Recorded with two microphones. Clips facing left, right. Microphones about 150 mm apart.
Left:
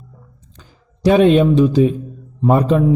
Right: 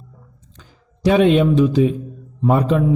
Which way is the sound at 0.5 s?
40° left (ahead or behind).